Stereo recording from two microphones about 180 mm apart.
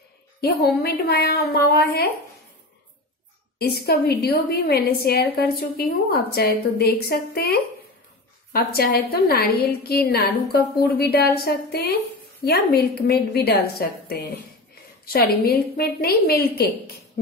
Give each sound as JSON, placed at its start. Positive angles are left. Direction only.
{"t": 0.7, "sound": "a woman's voice", "side_deg": 60}
{"t": 3.5, "sound": "a woman's voice", "side_deg": 60}